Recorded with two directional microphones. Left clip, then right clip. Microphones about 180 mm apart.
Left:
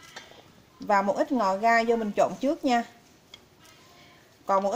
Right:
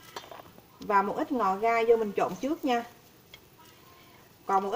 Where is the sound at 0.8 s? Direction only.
50° left (ahead or behind).